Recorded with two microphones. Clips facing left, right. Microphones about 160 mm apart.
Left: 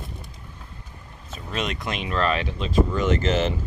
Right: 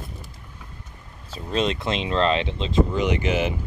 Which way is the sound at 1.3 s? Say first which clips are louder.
Right 5 dB; 30° right (ahead or behind).